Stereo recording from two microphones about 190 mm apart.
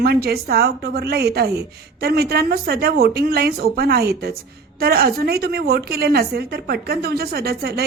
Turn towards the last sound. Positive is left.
turn(degrees=-55)  # may be behind; listen again after turning